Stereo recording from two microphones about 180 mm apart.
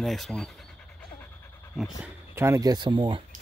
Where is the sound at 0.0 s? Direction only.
Centre (ahead or behind).